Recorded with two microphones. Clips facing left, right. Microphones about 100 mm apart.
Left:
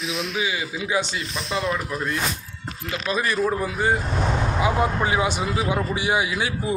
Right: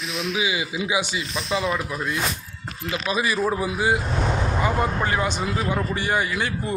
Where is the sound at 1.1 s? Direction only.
Centre (ahead or behind).